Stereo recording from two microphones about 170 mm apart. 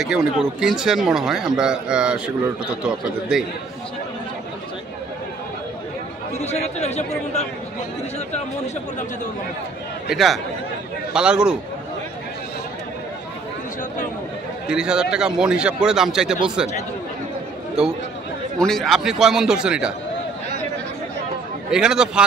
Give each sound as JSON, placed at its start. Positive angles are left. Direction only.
{"t": 0.0, "sound": "a man's voice", "side_deg": -5}
{"t": 6.4, "sound": "speech", "side_deg": 40}
{"t": 10.0, "sound": "a man's voice", "side_deg": 0}
{"t": 14.7, "sound": "a man's voice", "side_deg": -5}
{"t": 18.6, "sound": "a man's voice", "side_deg": 0}
{"t": 21.6, "sound": "a man's voice", "side_deg": -5}